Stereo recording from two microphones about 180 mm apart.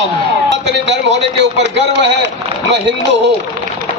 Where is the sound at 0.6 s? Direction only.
80° right.